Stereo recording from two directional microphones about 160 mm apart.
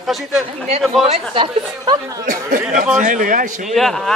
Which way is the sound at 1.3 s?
30° right (ahead or behind).